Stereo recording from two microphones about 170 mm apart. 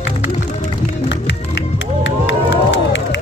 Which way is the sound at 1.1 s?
90° left.